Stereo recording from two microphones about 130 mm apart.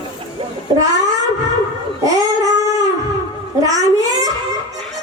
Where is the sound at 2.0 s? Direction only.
25° right (ahead or behind).